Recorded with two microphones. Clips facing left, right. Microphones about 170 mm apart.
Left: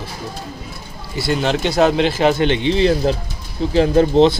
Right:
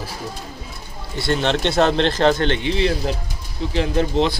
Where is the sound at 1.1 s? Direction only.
5° left (ahead or behind).